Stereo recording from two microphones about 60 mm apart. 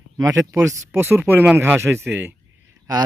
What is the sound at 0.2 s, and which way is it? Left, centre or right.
Speech, right.